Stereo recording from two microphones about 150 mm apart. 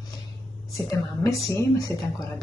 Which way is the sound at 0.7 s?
20° left (ahead or behind).